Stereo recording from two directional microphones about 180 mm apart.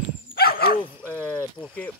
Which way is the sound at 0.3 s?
60° left (ahead or behind).